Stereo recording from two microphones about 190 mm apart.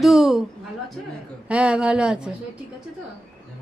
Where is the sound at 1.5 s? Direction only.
5° right (ahead or behind).